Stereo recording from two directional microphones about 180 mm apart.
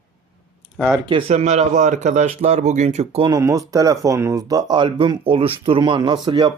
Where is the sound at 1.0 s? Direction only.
35° right (ahead or behind).